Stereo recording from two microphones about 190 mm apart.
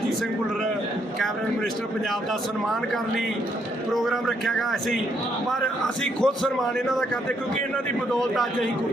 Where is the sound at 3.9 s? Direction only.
Centre (ahead or behind).